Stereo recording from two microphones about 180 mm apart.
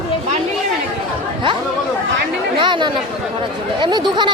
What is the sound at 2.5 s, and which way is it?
Speech, 25° right (ahead or behind).